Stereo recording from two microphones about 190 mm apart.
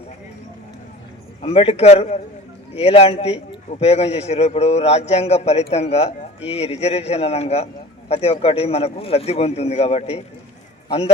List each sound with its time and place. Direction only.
1.4 s a man's voice: 30° left (ahead or behind)